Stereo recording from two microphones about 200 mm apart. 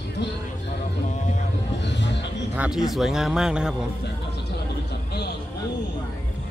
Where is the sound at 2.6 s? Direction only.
Centre (ahead or behind).